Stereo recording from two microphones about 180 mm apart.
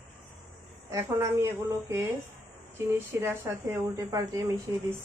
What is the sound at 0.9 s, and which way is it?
Speech, 15° right (ahead or behind).